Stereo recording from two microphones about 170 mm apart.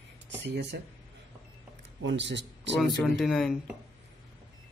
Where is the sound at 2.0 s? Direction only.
90° right.